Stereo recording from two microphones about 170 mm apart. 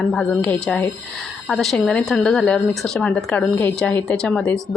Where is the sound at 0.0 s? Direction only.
5° left (ahead or behind).